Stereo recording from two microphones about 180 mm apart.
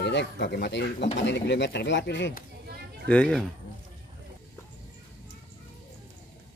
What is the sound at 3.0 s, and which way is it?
Speech, 5° left (ahead or behind).